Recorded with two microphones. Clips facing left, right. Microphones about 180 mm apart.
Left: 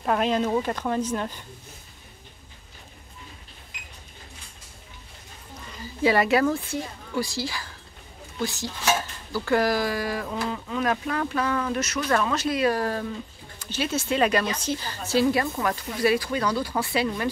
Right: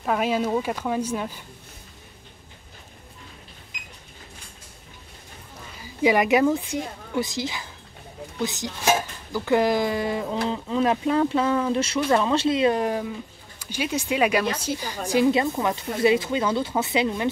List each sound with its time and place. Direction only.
0.0 s a woman's voice: 5° right (ahead or behind)
5.8 s a woman's voice: 15° right (ahead or behind)